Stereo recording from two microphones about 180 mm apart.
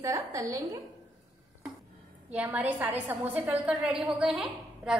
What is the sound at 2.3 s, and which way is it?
A woman's voice, 10° right (ahead or behind).